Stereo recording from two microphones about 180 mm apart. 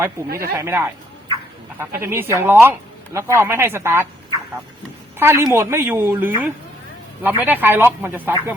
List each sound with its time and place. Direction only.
0.3 s speech: 55° right (ahead or behind)
0.5 s speech: 15° right (ahead or behind)
5.2 s speech: 15° right (ahead or behind)